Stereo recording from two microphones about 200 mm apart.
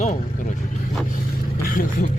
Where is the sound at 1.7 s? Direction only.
45° left (ahead or behind).